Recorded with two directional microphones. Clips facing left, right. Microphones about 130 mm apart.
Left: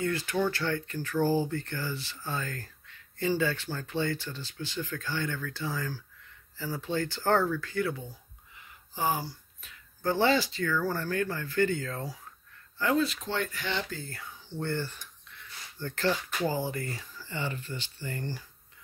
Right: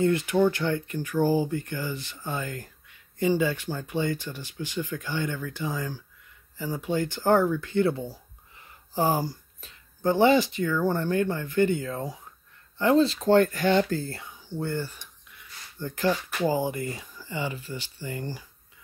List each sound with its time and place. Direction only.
0.0 s speech: 20° right (ahead or behind); by 9.8 s 40° right (ahead or behind)
10.0 s speech: 20° right (ahead or behind); by 14.2 s 35° right (ahead or behind)
14.2 s a sound: 10° right (ahead or behind)
16.3 s speech: 15° right (ahead or behind)